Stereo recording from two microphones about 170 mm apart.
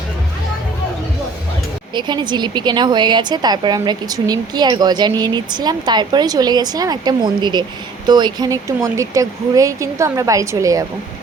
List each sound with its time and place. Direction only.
1.9 s a woman's voice: 25° right (ahead or behind)